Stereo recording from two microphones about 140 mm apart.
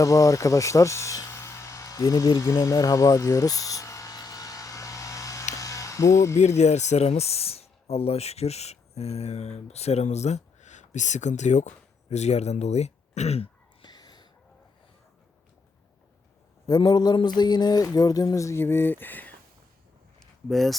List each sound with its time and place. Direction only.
0.0 s music: 25° left (ahead or behind)
5.5 s mechanisms: 25° left (ahead or behind)
6.4 s speech: 55° left (ahead or behind)
13.8 s whispering: 30° left (ahead or behind)
16.6 s a sound: 30° left (ahead or behind); by 19.3 s 15° left (ahead or behind)
20.1 s a sound: centre (ahead or behind)